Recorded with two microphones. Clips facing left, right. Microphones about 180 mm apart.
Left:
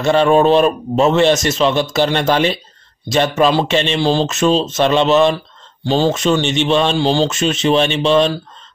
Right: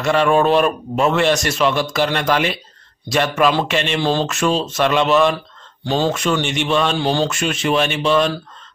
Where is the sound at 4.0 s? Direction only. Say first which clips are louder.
Left 3 dB; 15° left (ahead or behind).